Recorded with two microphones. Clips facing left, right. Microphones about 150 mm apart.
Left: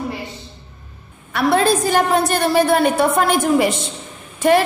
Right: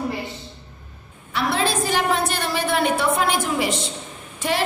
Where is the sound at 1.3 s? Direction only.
50° left (ahead or behind).